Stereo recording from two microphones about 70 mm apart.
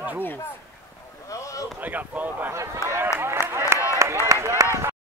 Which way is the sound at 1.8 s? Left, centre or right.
Right.